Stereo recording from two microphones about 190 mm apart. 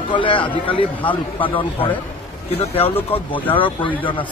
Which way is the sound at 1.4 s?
25° left (ahead or behind).